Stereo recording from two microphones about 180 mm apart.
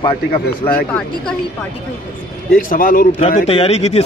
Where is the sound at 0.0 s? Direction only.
30° left (ahead or behind).